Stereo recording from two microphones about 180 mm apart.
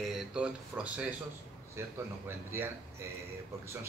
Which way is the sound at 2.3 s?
15° right (ahead or behind).